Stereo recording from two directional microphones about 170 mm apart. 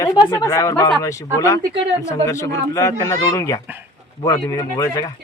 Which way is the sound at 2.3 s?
20° left (ahead or behind).